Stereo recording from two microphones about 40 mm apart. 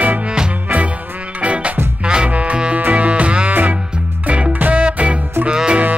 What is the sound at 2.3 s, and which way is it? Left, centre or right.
Music, right.